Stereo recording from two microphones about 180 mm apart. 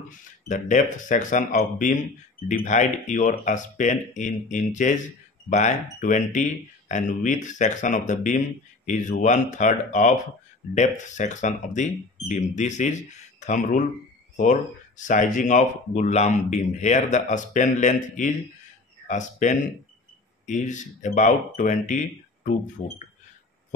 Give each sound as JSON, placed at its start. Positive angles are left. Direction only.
{"t": 0.1, "sound": "speech", "side_deg": 45}